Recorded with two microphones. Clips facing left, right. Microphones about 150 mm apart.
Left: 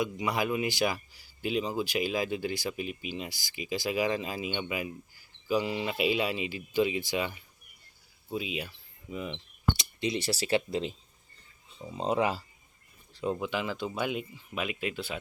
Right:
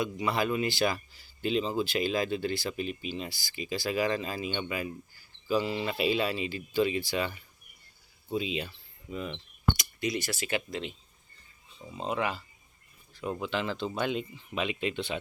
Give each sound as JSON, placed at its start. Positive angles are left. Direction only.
{"t": 0.0, "sound": "speech", "side_deg": 10}
{"t": 8.3, "sound": "speech", "side_deg": 5}
{"t": 9.7, "sound": "speech", "side_deg": 25}
{"t": 11.9, "sound": "speech", "side_deg": 25}
{"t": 13.4, "sound": "speech", "side_deg": 10}